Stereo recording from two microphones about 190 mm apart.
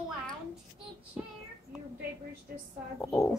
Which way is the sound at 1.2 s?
5° right (ahead or behind).